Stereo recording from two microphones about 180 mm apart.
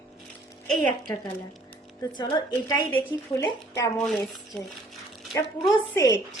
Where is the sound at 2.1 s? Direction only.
25° left (ahead or behind).